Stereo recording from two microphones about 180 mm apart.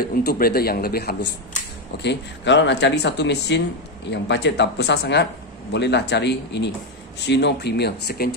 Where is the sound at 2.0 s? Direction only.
75° left (ahead or behind); by 8.3 s 60° left (ahead or behind).